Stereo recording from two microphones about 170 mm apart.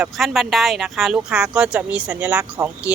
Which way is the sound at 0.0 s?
Centre (ahead or behind).